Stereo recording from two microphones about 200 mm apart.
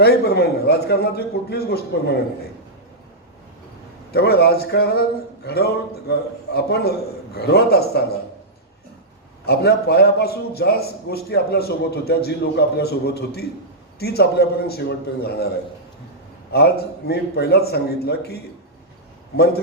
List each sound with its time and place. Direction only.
0.0 s a man's voice: 55° left (ahead or behind)
4.1 s a man's voice: 55° left (ahead or behind)
9.5 s a man's voice: 55° left (ahead or behind)
16.5 s a man's voice: 55° left (ahead or behind)